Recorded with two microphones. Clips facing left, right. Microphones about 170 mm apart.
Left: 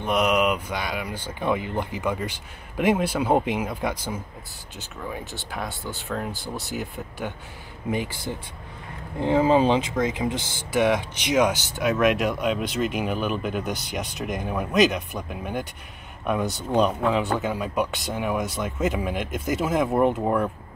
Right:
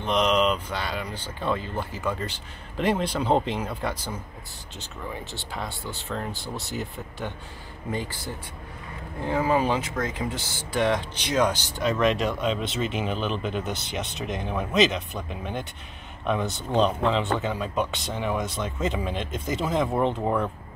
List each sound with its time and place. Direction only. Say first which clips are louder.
0.0 s speech: left 1 dB; 10° left (ahead or behind)
5.6 s speech: left 2 dB; centre (ahead or behind)
7.9 s speech: left 4 dB; 15° left (ahead or behind)
16.6 s speech: left 1 dB; 10° left (ahead or behind)